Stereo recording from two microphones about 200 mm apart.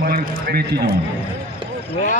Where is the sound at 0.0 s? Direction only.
50° right (ahead or behind).